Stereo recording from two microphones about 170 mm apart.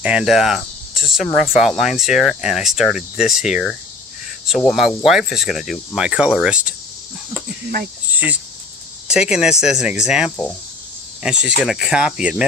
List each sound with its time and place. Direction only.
0.0 s speech: 5° right (ahead or behind)
8.1 s cricket: 10° right (ahead or behind)
9.0 s speech: 5° right (ahead or behind)